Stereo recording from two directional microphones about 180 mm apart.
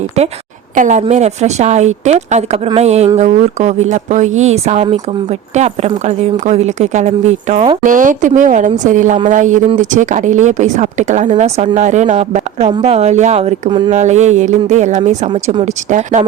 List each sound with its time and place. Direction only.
0.8 s a woman's voice: 45° right (ahead or behind); by 13.9 s 25° right (ahead or behind)
13.9 s speech: 40° right (ahead or behind)
15.3 s speech: 25° right (ahead or behind)
15.6 s speech: 40° right (ahead or behind)